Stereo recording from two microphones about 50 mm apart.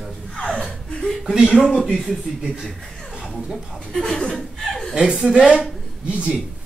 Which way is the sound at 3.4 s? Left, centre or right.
Centre.